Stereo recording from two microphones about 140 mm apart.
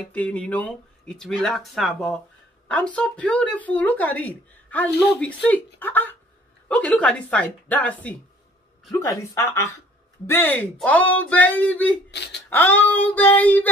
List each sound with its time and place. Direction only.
0.1 s speech: 10° left (ahead or behind)